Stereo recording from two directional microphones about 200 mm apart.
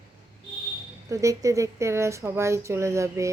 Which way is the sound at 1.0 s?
15° right (ahead or behind).